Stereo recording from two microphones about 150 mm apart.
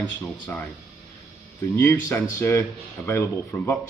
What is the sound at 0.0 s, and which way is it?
Speech, 10° left (ahead or behind).